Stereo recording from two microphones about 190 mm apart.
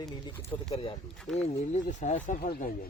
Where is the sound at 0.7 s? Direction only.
30° left (ahead or behind).